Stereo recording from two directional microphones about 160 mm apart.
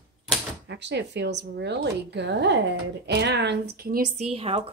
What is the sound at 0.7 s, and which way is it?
A woman's voice, 90° right.